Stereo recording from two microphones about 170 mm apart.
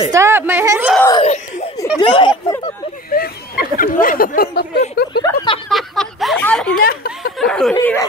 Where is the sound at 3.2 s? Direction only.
55° left (ahead or behind).